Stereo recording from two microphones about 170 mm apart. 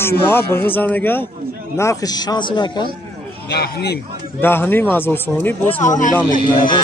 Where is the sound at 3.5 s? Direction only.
70° left (ahead or behind).